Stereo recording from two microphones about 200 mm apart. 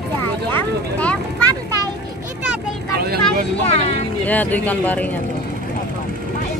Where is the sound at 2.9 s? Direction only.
50° right (ahead or behind).